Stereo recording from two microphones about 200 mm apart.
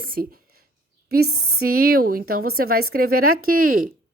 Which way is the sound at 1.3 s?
90° right.